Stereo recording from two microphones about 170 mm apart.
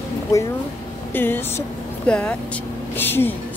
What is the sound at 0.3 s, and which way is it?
Speech, 20° left (ahead or behind).